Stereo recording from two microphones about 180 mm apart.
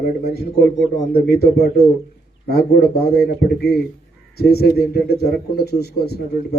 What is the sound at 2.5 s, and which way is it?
A man's voice, 60° left (ahead or behind).